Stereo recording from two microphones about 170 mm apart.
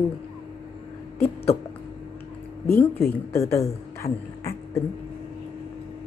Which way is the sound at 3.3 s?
15° left (ahead or behind).